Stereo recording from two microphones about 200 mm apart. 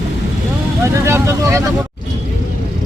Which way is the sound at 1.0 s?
15° right (ahead or behind).